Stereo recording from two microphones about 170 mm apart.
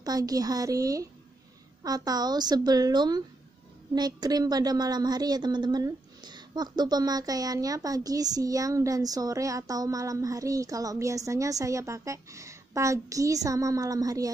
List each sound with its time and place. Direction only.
0.0 s a woman's voice: 20° right (ahead or behind)